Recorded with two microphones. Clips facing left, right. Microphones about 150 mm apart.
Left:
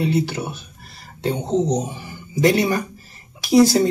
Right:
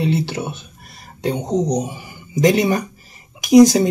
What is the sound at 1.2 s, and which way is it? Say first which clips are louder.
Speech: right 1 dB; 15° right (ahead or behind).